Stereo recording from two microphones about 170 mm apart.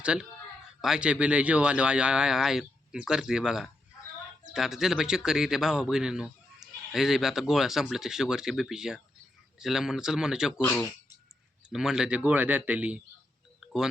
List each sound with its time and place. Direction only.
0.0 s speech: 5° right (ahead or behind)
10.6 s speech: 15° left (ahead or behind)
11.7 s speech: 5° right (ahead or behind)